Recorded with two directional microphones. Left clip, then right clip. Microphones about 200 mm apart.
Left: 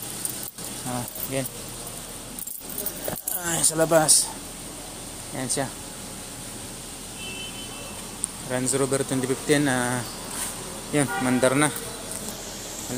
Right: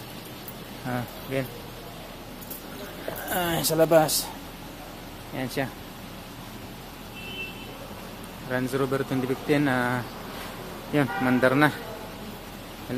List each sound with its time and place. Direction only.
1.3 s speech: 5° right (ahead or behind)
3.3 s speech: 20° right (ahead or behind)
3.7 s speech: 5° right (ahead or behind)
5.4 s speech: 5° right (ahead or behind)
8.5 s speech: 10° left (ahead or behind)